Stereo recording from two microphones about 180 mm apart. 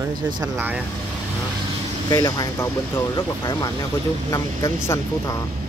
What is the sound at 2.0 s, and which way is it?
Speech, 20° left (ahead or behind).